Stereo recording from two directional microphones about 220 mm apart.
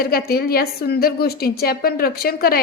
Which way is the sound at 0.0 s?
45° left (ahead or behind).